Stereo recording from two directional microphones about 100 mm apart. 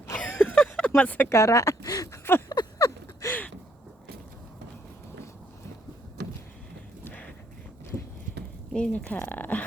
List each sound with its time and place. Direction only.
0.2 s a sound: 15° left (ahead or behind)
1.3 s speech: 30° left (ahead or behind)
2.5 s a sound: 35° left (ahead or behind)
7.0 s clip-clop: 15° left (ahead or behind)
7.9 s clip-clop: 45° right (ahead or behind)
8.7 s speech: 10° left (ahead or behind)